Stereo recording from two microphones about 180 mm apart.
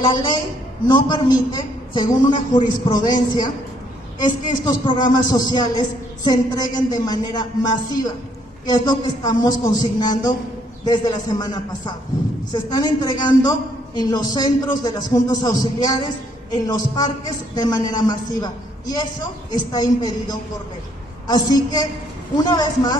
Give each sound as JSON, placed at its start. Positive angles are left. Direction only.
{"t": 0.0, "sound": "a man's voice", "side_deg": 25}
{"t": 4.2, "sound": "a man's voice", "side_deg": 25}